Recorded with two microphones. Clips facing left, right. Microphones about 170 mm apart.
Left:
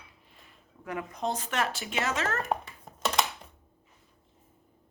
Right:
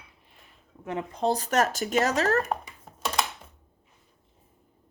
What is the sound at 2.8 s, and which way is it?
Typing, 5° right (ahead or behind).